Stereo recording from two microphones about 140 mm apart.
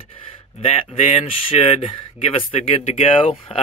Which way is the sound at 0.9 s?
50° left (ahead or behind).